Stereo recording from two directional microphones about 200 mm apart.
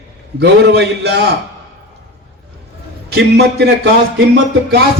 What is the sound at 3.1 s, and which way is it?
Speech, 55° right (ahead or behind).